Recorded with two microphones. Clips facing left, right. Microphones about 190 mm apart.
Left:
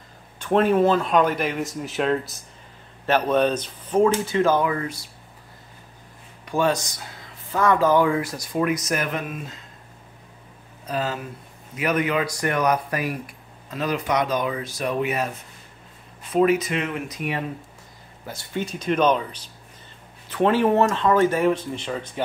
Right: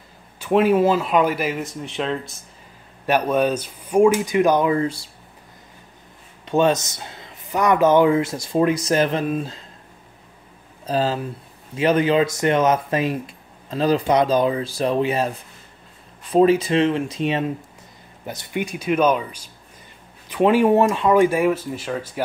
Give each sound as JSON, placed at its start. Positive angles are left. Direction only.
{"t": 0.4, "sound": "speech", "side_deg": -10}
{"t": 3.1, "sound": "speech", "side_deg": -10}
{"t": 6.4, "sound": "speech", "side_deg": -20}
{"t": 10.9, "sound": "speech", "side_deg": -30}